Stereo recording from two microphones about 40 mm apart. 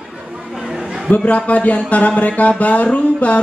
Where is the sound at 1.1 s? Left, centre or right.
Left.